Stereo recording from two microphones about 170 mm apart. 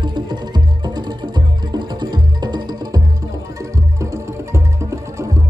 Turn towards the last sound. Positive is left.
turn(degrees=-15)  # may be behind; listen again after turning